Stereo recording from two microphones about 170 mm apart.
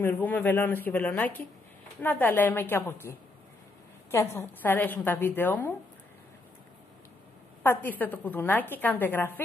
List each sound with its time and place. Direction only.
0.0 s a woman's voice: 10° left (ahead or behind)
7.6 s a woman's voice: 10° left (ahead or behind)